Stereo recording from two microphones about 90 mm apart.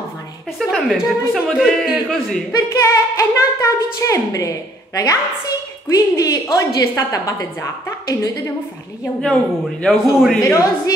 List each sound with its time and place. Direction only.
0.7 s speech: 5° right (ahead or behind)
2.5 s a woman's voice: 40° left (ahead or behind)
9.2 s a man's voice: 5° left (ahead or behind)
10.4 s a woman's voice: 35° left (ahead or behind)